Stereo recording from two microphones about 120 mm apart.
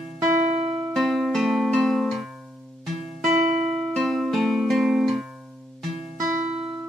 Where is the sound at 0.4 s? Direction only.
65° right (ahead or behind).